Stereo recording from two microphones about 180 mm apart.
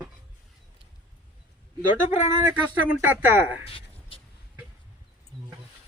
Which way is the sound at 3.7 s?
30° left (ahead or behind).